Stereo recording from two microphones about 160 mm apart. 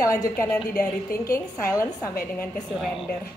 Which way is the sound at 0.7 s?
65° left (ahead or behind).